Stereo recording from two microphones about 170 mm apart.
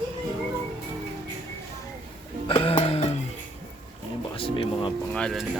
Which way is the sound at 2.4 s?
30° left (ahead or behind).